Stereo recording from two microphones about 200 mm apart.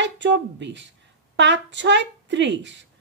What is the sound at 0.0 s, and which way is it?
A woman's voice, 65° right (ahead or behind).